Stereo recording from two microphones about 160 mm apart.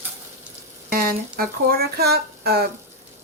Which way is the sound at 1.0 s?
65° right (ahead or behind).